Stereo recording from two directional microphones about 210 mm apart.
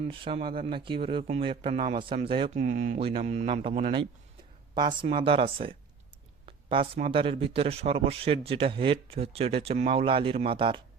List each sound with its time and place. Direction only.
0.1 s a man's voice: 25° right (ahead or behind)
2.6 s mantra: 35° right (ahead or behind)
4.8 s a man's voice: 20° right (ahead or behind)
6.4 s a sound: 25° right (ahead or behind)
7.1 s a man's voice: 25° right (ahead or behind)